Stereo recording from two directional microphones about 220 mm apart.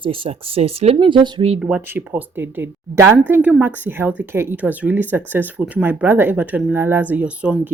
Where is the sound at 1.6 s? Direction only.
5° right (ahead or behind).